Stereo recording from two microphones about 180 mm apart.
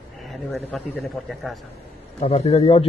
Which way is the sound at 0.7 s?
5° left (ahead or behind).